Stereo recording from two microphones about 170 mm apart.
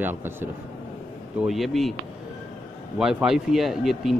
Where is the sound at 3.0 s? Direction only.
5° right (ahead or behind).